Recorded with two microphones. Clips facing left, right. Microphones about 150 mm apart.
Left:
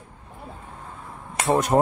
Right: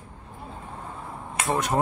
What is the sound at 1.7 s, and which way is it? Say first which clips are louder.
Speech: left 6 dB; 45° left (ahead or behind).